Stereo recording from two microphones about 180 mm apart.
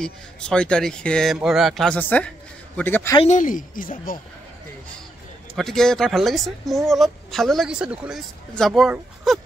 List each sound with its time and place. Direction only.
0.0 s a woman's voice: 5° left (ahead or behind)
3.2 s speech: 40° left (ahead or behind)
5.6 s a woman's voice: centre (ahead or behind)